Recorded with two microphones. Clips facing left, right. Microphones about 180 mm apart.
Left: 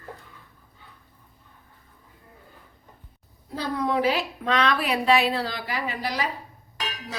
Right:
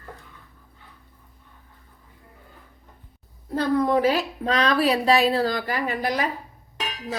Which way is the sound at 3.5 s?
50° right (ahead or behind).